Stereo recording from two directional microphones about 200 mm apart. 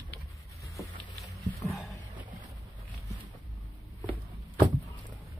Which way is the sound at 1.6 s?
Centre (ahead or behind).